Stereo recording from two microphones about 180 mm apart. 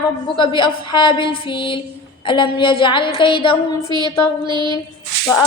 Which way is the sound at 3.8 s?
25° right (ahead or behind).